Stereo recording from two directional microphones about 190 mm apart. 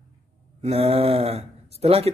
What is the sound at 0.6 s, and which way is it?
Speech, 30° right (ahead or behind).